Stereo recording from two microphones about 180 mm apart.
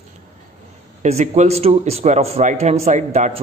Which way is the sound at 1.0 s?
40° right (ahead or behind).